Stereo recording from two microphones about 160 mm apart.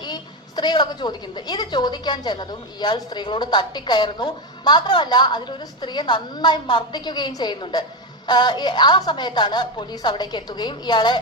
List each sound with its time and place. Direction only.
0.0 s a woman's voice: 25° left (ahead or behind)